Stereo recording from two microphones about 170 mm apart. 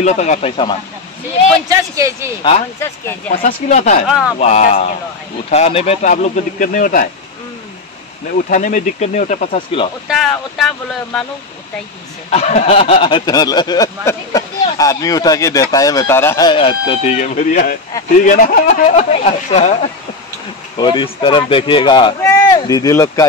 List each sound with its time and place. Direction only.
0.0 s speech: 45° left (ahead or behind)
1.7 s a man's voice: 20° right (ahead or behind)
3.3 s speech: 45° left (ahead or behind)
8.5 s speech: 50° left (ahead or behind)
10.0 s speech: centre (ahead or behind)
12.3 s a sound: 40° left (ahead or behind); by 16.4 s 15° left (ahead or behind)
16.4 s a sound: 30° left (ahead or behind)
17.2 s speech: 45° left (ahead or behind)
18.9 s speech: 40° left (ahead or behind)
20.7 s a sound: 25° left (ahead or behind)